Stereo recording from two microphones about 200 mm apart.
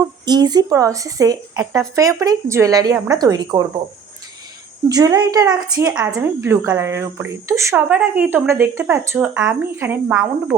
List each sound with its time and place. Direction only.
0.0 s a woman's voice: 20° right (ahead or behind)
4.9 s a woman's voice: 20° right (ahead or behind)